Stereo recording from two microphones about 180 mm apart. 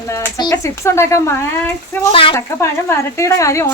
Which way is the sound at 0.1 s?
20° left (ahead or behind).